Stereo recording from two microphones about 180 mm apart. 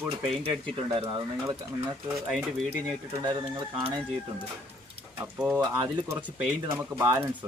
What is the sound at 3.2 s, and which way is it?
Speech, 30° right (ahead or behind).